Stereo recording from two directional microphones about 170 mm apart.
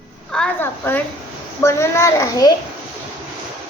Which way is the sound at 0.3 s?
10° left (ahead or behind).